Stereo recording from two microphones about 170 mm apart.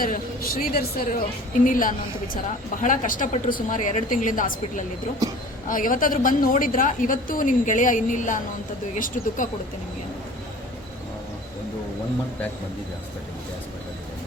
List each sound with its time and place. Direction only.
0.0 s a woman's voice: 60° left (ahead or behind)
5.6 s a woman's voice: 50° left (ahead or behind)